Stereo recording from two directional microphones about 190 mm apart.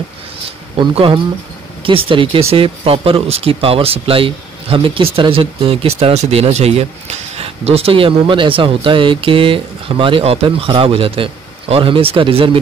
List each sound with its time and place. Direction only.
0.7 s speech: 25° right (ahead or behind)